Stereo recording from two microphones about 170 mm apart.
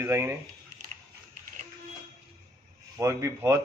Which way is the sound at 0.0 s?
15° right (ahead or behind).